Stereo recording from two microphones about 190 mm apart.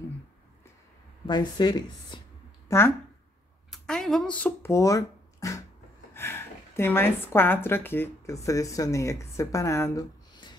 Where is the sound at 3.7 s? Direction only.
Centre (ahead or behind); by 10.5 s 20° left (ahead or behind).